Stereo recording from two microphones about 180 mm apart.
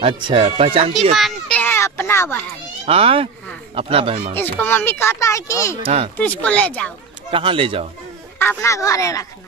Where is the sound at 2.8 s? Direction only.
35° right (ahead or behind).